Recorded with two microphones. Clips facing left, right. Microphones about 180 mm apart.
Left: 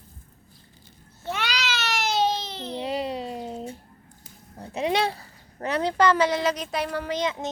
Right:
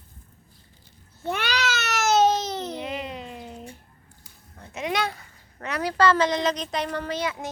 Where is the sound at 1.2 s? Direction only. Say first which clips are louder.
Right 3 dB; 55° right (ahead or behind).